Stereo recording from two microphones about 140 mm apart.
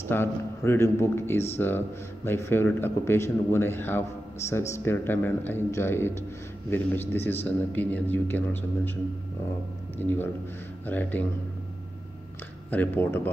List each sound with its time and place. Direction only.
0.1 s speech: 15° left (ahead or behind)
9.9 s speech: 15° left (ahead or behind)
12.7 s speech: 15° left (ahead or behind)